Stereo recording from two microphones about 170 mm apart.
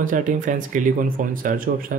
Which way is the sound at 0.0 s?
50° right (ahead or behind).